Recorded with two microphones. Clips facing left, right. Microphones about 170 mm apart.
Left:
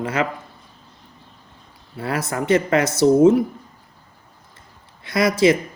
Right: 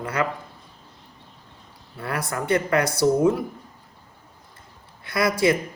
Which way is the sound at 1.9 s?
20° left (ahead or behind).